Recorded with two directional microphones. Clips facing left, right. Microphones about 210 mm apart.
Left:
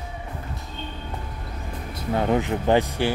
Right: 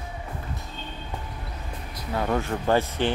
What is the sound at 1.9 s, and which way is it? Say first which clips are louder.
Speech: left 4 dB; 25° left (ahead or behind).